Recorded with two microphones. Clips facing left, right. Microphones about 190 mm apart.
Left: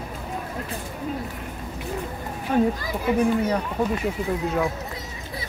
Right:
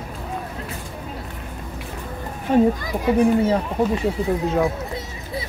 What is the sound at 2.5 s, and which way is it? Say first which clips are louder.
Speech: right 4 dB; 30° right (ahead or behind).